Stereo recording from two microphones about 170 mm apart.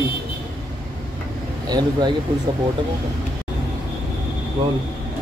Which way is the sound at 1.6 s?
25° right (ahead or behind).